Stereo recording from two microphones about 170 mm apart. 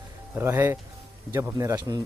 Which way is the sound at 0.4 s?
15° right (ahead or behind).